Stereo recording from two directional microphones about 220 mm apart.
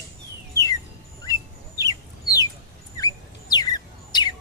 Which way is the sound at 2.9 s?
15° left (ahead or behind).